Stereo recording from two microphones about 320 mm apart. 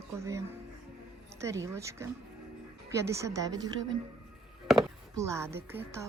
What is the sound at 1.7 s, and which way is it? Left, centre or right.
Speech, centre.